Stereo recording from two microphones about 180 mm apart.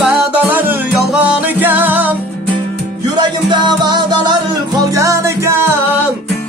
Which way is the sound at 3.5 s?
25° right (ahead or behind).